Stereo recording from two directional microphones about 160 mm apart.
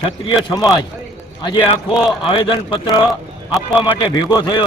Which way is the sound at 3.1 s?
Centre (ahead or behind).